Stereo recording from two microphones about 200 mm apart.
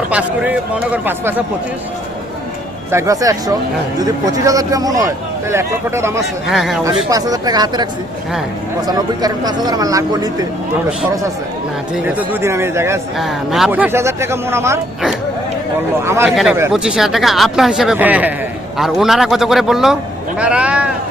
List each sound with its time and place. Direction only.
0.1 s a man's voice: 5° right (ahead or behind)
2.9 s a man's voice: 15° right (ahead or behind)
6.5 s speech: centre (ahead or behind)
6.8 s speech: 15° right (ahead or behind)
8.9 s speech: 20° right (ahead or behind)
12.0 s a man's voice: 10° right (ahead or behind)
13.1 s a man's voice: centre (ahead or behind)
16.0 s a man's voice: 15° right (ahead or behind)
16.3 s speech: centre (ahead or behind)